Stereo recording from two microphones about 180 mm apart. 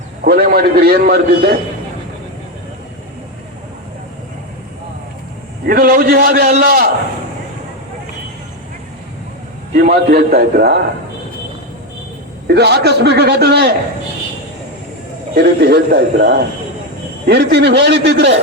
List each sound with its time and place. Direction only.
0.3 s a man's voice: 60° right (ahead or behind)
5.6 s a man's voice: 55° right (ahead or behind)
9.7 s a man's voice: 50° right (ahead or behind)
12.5 s a man's voice: 65° right (ahead or behind)
15.4 s a man's voice: 65° right (ahead or behind)